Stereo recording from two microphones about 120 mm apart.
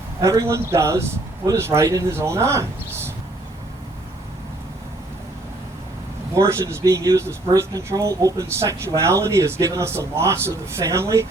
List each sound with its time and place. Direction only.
0.2 s speech: 25° right (ahead or behind)
6.3 s speech: 25° right (ahead or behind)